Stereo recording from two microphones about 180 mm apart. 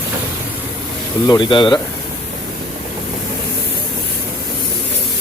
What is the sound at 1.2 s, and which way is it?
Speech, 25° left (ahead or behind).